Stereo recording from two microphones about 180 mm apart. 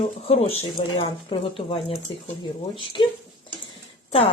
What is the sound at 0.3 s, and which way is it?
Speech, 30° left (ahead or behind).